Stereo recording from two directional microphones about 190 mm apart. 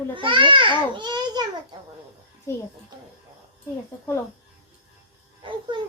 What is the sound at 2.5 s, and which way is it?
Speech, 15° left (ahead or behind).